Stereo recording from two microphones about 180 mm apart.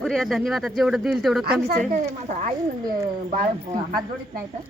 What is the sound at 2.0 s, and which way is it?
Speech, 45° right (ahead or behind).